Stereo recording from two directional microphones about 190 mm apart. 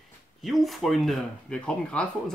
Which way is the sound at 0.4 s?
Centre (ahead or behind).